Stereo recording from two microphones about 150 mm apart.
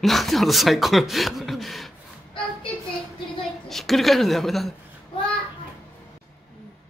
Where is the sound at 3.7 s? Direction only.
Centre (ahead or behind).